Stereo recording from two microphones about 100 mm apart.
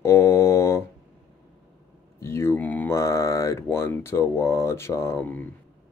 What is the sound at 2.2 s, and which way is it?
Speech, 25° left (ahead or behind).